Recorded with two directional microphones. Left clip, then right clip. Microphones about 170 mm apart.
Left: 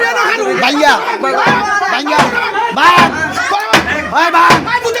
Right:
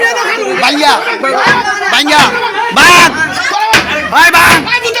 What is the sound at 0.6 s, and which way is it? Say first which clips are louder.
Speech: right 2 dB; 35° left (ahead or behind).